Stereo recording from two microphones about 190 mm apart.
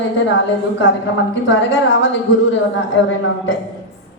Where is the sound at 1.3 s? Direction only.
75° left (ahead or behind).